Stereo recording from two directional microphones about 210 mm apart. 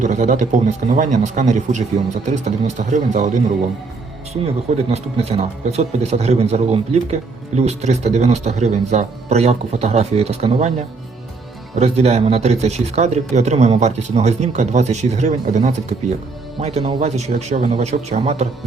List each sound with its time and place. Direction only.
0.0 s a man's voice: 35° right (ahead or behind)
4.4 s a man's voice: 30° right (ahead or behind)